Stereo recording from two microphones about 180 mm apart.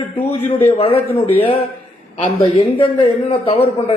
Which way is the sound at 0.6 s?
35° left (ahead or behind).